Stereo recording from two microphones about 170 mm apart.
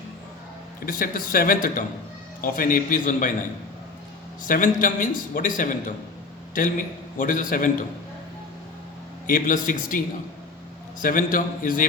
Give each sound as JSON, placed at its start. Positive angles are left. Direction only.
{"t": 0.9, "sound": "speech", "side_deg": 55}
{"t": 4.4, "sound": "a man's voice", "side_deg": 50}
{"t": 9.2, "sound": "a man's voice", "side_deg": 50}
{"t": 11.0, "sound": "a man's voice", "side_deg": 55}